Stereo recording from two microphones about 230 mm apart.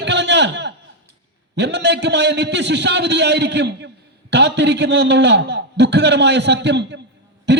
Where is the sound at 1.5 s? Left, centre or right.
Right.